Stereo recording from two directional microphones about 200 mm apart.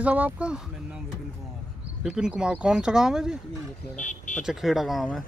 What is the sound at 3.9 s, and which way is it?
Speech, 40° left (ahead or behind).